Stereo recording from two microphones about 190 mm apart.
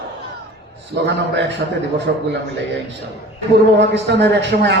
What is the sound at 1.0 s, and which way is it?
Speech, 65° right (ahead or behind).